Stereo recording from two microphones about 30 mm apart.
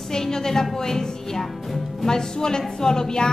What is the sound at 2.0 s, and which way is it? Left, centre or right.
Speech, left.